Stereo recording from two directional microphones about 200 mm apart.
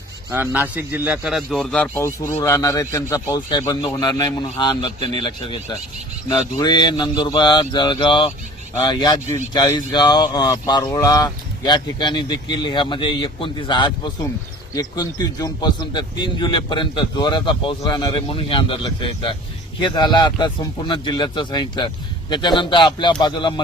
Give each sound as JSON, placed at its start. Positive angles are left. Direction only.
{"t": 0.3, "sound": "a man's voice", "side_deg": -10}
{"t": 19.8, "sound": "speech", "side_deg": 20}